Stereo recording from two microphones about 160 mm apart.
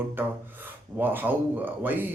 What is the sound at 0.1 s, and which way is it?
Speech, 15° right (ahead or behind).